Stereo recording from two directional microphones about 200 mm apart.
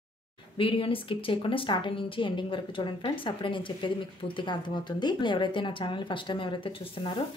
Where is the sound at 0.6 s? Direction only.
25° left (ahead or behind).